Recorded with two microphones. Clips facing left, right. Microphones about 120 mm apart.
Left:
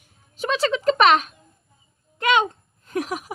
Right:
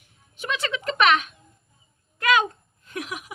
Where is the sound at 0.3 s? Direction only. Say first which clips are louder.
Left 7 dB; 35° left (ahead or behind).